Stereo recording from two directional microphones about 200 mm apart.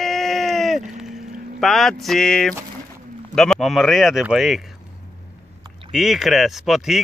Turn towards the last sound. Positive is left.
turn(degrees=0)  # may be behind; listen again after turning